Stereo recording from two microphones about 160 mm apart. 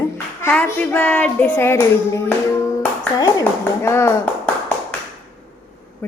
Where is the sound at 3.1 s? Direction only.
25° left (ahead or behind).